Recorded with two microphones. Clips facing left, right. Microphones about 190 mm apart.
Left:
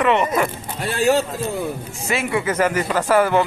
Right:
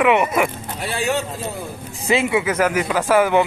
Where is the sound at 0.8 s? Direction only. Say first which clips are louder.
Left 5 dB; 40° left (ahead or behind).